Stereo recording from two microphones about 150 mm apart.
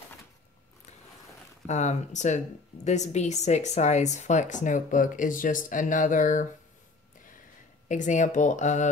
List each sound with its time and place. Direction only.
1.7 s speech: 50° left (ahead or behind)
7.9 s speech: 55° left (ahead or behind)